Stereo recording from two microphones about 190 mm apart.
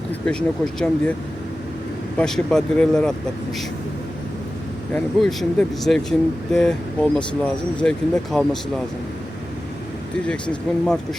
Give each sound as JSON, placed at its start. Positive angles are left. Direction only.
{"t": 0.3, "sound": "speech", "side_deg": 5}
{"t": 2.1, "sound": "speech", "side_deg": 5}
{"t": 4.9, "sound": "speech", "side_deg": 5}